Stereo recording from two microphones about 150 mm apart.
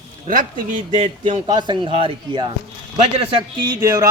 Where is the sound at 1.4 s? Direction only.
30° right (ahead or behind).